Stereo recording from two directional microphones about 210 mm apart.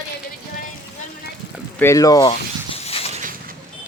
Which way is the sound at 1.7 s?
15° left (ahead or behind).